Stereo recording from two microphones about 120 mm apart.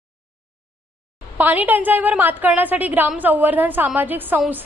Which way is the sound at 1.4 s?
15° right (ahead or behind).